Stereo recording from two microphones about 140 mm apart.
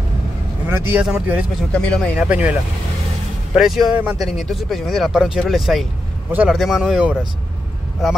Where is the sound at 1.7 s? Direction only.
10° left (ahead or behind).